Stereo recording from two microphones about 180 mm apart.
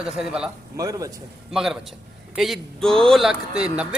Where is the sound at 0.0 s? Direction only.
5° right (ahead or behind).